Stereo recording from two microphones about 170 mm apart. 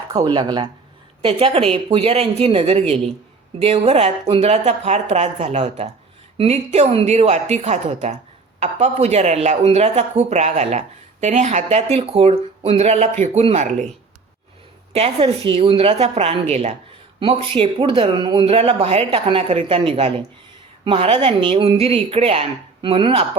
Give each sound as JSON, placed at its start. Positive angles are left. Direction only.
{"t": 0.1, "sound": "a woman's voice", "side_deg": -25}
{"t": 14.9, "sound": "a woman's voice", "side_deg": -35}